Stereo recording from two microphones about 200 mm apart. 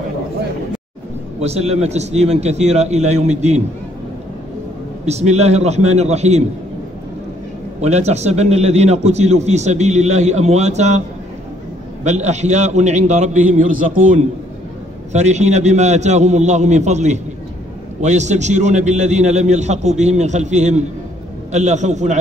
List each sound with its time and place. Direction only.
1.4 s a man's voice: 30° right (ahead or behind)
5.0 s a man's voice: 35° right (ahead or behind)
7.8 s a man's voice: 35° right (ahead or behind)
12.0 s a man's voice: 35° right (ahead or behind)